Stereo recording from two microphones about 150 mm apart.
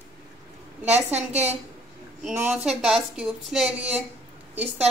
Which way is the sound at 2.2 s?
10° right (ahead or behind).